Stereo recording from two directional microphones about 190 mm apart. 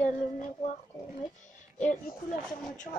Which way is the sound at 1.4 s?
40° left (ahead or behind).